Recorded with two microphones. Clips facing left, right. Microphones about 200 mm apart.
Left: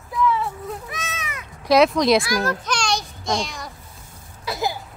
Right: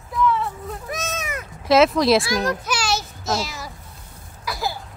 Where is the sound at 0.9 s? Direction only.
45° right (ahead or behind).